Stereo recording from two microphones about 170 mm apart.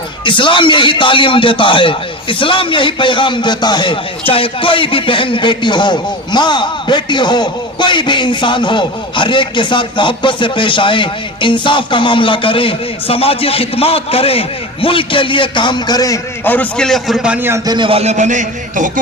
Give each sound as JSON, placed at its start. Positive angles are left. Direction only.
{"t": 0.3, "sound": "a man's voice", "side_deg": 30}
{"t": 17.7, "sound": "a man's voice", "side_deg": -30}